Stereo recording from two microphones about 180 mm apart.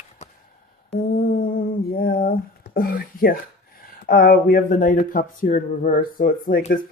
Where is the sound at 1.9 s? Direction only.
55° left (ahead or behind).